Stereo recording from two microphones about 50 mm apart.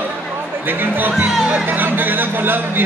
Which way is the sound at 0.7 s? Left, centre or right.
Right.